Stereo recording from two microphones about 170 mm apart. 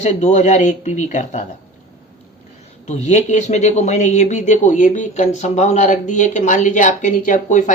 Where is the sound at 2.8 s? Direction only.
40° left (ahead or behind).